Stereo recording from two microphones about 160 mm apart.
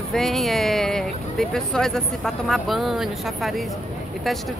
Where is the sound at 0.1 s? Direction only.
Centre (ahead or behind).